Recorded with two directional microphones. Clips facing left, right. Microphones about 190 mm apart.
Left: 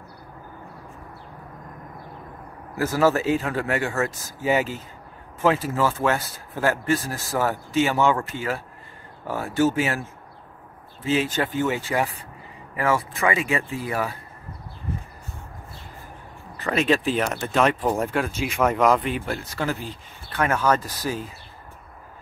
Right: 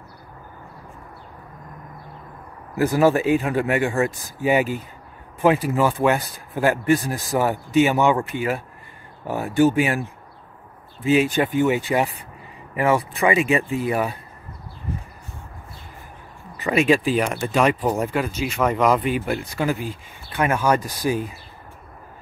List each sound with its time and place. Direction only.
2.8 s speech: 15° right (ahead or behind)
16.5 s speech: 10° right (ahead or behind)